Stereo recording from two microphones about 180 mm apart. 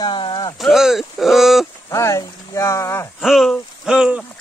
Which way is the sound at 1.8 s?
15° left (ahead or behind).